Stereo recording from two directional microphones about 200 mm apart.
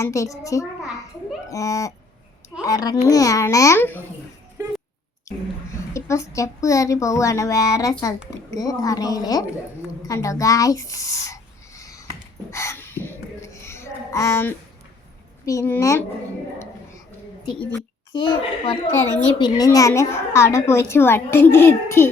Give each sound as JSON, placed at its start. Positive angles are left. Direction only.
{"t": 0.0, "sound": "a child's voice", "side_deg": 15}
{"t": 5.7, "sound": "a child's voice", "side_deg": 15}
{"t": 12.5, "sound": "a sound", "side_deg": 15}
{"t": 15.4, "sound": "a child's voice", "side_deg": 15}
{"t": 18.1, "sound": "a child's voice", "side_deg": 25}
{"t": 18.9, "sound": "a child's voice", "side_deg": 10}